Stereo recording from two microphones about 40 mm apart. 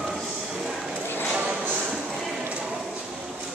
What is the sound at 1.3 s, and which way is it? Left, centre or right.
Music, right.